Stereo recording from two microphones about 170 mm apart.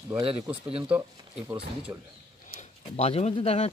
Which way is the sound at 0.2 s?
35° right (ahead or behind).